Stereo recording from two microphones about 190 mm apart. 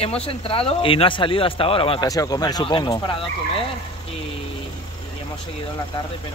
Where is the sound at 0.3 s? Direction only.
30° left (ahead or behind).